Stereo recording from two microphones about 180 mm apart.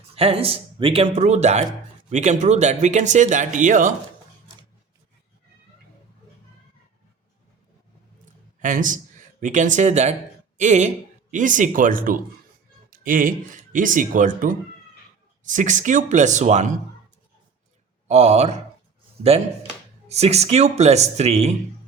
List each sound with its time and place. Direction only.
0.2 s speech: 30° right (ahead or behind)
8.2 s a sound: 45° right (ahead or behind)
9.4 s speech: 45° right (ahead or behind)
12.9 s a sound: 50° right (ahead or behind)
13.7 s speech: 45° right (ahead or behind)
18.1 s speech: 35° right (ahead or behind)
20.1 s speech: 35° right (ahead or behind)